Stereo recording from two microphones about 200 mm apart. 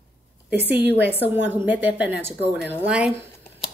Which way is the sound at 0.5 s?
55° right (ahead or behind).